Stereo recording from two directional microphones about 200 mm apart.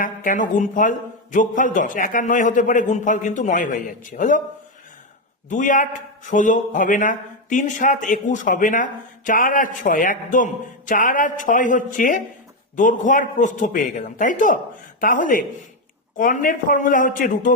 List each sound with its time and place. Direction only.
0.0 s a man's voice: 40° left (ahead or behind)
5.5 s a man's voice: 40° left (ahead or behind)